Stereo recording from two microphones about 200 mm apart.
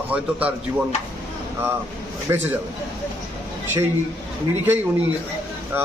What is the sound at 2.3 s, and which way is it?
Speech, 15° right (ahead or behind).